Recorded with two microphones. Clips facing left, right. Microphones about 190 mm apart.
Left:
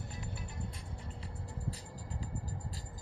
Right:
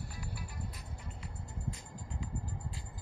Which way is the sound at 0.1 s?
25° left (ahead or behind).